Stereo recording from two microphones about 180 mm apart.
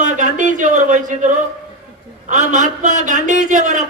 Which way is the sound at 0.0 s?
45° right (ahead or behind).